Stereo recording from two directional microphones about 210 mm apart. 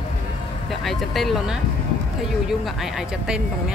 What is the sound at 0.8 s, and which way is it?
Speech, centre (ahead or behind).